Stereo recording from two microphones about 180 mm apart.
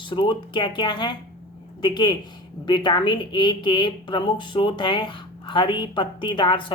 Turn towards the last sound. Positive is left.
turn(degrees=25)  # may be behind; listen again after turning